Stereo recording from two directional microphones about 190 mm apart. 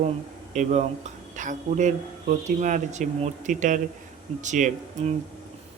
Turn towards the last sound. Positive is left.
turn(degrees=-40)  # may be behind; listen again after turning